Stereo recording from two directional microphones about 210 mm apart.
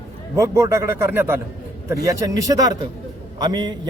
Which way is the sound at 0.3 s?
15° right (ahead or behind).